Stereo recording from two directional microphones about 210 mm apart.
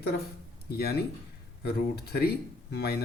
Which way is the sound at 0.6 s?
50° left (ahead or behind).